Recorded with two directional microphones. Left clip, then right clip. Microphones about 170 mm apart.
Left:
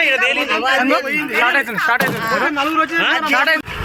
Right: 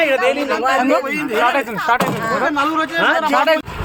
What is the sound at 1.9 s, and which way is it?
Speech, centre (ahead or behind).